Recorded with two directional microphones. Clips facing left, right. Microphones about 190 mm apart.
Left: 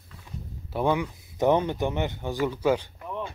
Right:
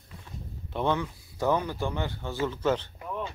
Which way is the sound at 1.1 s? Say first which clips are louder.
Left 5 dB; 20° left (ahead or behind).